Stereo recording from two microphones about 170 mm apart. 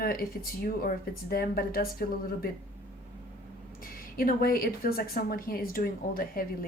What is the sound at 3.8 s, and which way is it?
A woman's voice, 60° left (ahead or behind).